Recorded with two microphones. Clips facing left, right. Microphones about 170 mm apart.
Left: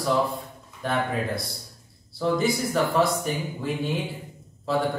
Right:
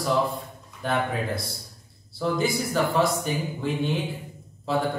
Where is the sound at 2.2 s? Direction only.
Centre (ahead or behind).